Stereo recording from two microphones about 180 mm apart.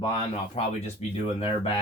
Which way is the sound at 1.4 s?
30° left (ahead or behind).